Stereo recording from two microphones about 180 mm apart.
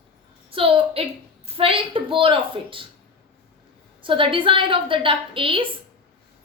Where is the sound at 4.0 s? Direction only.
30° right (ahead or behind).